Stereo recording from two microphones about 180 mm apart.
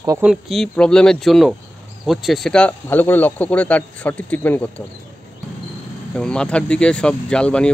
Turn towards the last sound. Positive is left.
turn(degrees=5)  # may be behind; listen again after turning